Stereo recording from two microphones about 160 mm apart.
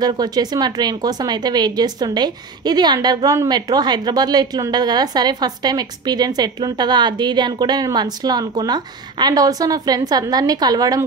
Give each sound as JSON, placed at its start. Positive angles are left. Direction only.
{"t": 0.0, "sound": "speech", "side_deg": -25}